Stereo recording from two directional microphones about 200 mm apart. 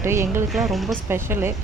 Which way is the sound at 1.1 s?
10° right (ahead or behind).